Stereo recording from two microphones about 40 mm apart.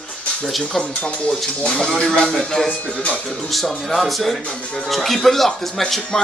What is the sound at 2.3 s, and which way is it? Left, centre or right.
Speech, centre.